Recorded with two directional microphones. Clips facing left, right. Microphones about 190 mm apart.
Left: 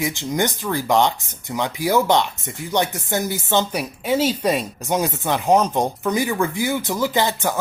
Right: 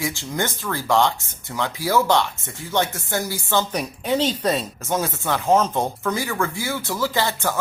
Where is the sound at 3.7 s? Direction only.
10° left (ahead or behind).